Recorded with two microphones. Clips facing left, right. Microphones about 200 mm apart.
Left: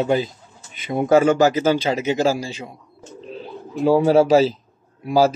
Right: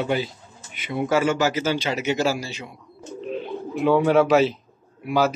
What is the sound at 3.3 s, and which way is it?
Speech, 35° left (ahead or behind).